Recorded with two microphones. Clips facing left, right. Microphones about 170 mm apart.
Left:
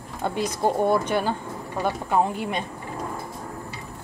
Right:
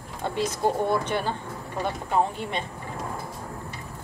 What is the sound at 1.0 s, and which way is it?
Speech, 15° left (ahead or behind).